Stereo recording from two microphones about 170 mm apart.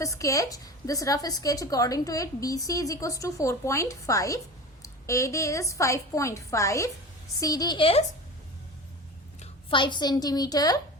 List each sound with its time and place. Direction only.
0.0 s a woman's voice: 20° left (ahead or behind)
9.4 s a woman's voice: 30° left (ahead or behind)